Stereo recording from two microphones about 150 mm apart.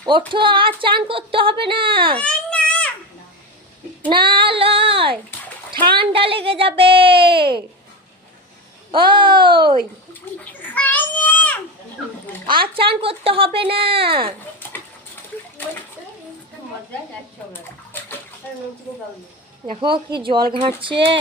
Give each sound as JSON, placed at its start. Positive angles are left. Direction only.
{"t": 0.3, "sound": "speech", "side_deg": -35}
{"t": 2.1, "sound": "baby cry", "side_deg": 10}
{"t": 4.1, "sound": "child singing", "side_deg": -35}
{"t": 5.7, "sound": "speech", "side_deg": -35}
{"t": 8.9, "sound": "speech", "side_deg": -35}
{"t": 10.3, "sound": "children playing", "side_deg": 10}
{"t": 12.5, "sound": "speech", "side_deg": -35}
{"t": 19.6, "sound": "speech", "side_deg": -40}